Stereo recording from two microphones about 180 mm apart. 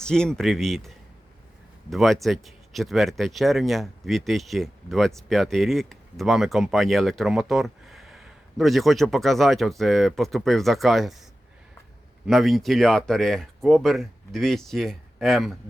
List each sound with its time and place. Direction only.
0.0 s speech: 5° left (ahead or behind)
12.2 s speech: centre (ahead or behind)